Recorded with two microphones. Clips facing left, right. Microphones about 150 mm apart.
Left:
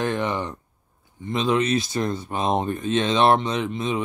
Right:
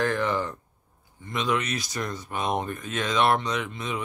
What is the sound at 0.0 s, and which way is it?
Speech, 20° left (ahead or behind).